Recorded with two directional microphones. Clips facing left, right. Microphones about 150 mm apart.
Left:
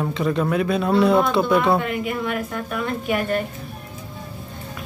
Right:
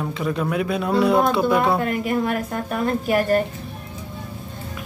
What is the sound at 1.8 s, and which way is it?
A woman's voice, 40° right (ahead or behind).